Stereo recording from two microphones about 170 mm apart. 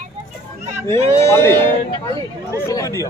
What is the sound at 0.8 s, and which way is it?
Speech, 15° left (ahead or behind).